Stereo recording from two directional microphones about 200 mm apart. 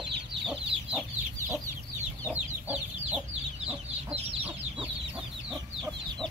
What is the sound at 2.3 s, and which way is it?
Chicken, 5° right (ahead or behind).